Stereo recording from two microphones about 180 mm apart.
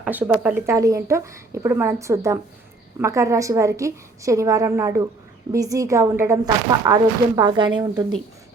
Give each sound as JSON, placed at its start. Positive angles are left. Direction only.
{"t": 0.0, "sound": "speech", "side_deg": -10}